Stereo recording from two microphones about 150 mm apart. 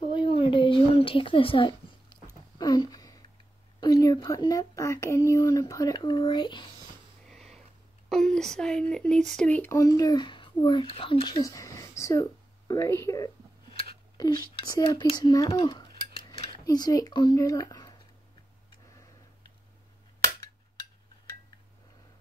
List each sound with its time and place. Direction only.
0.1 s a sound: 35° left (ahead or behind)
3.8 s speech: 25° left (ahead or behind)
7.2 s a sound: centre (ahead or behind)
8.1 s speech: 5° left (ahead or behind); by 15.9 s 25° left (ahead or behind)
16.2 s cutlery: 40° left (ahead or behind)
16.6 s speech: 25° left (ahead or behind)